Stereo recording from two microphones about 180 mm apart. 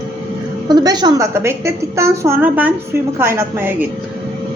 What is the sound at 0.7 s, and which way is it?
A woman's voice, 20° right (ahead or behind).